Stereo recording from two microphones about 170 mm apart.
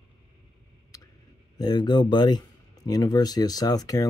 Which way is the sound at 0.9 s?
20° left (ahead or behind).